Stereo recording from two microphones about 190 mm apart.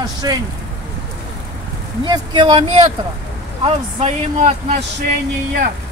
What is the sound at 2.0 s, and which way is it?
Speech, 25° right (ahead or behind).